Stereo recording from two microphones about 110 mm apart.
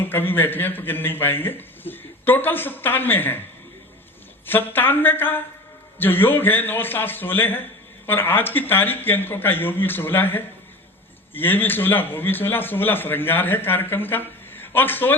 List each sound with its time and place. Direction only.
0.0 s a man's voice: 20° left (ahead or behind)
4.4 s a man's voice: 20° left (ahead or behind)